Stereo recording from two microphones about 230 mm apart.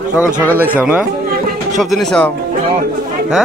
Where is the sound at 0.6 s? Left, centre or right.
Centre.